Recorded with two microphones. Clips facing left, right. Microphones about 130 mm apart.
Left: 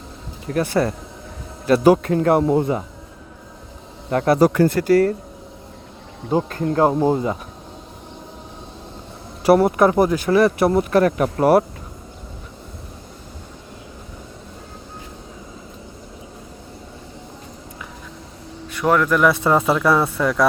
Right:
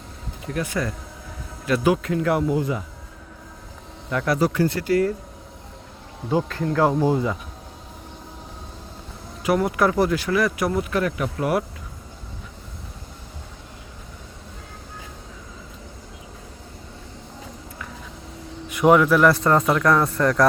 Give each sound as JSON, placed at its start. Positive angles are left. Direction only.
{"t": 0.5, "sound": "speech", "side_deg": 35}
{"t": 4.1, "sound": "speech", "side_deg": 40}
{"t": 6.3, "sound": "speech", "side_deg": 35}
{"t": 9.7, "sound": "speech", "side_deg": 25}
{"t": 18.7, "sound": "speech", "side_deg": -15}